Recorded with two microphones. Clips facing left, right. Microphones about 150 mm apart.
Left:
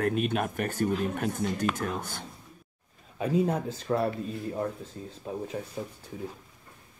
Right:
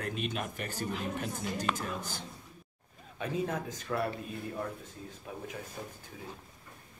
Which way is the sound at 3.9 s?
45° left (ahead or behind).